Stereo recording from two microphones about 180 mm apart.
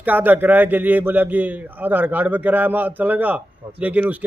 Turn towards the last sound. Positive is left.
turn(degrees=-10)  # may be behind; listen again after turning